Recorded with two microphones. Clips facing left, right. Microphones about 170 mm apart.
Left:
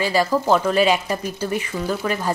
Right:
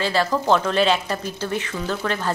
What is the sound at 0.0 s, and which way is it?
Speech, 10° left (ahead or behind).